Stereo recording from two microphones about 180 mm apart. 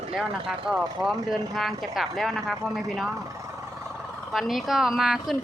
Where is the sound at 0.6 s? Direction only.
5° right (ahead or behind).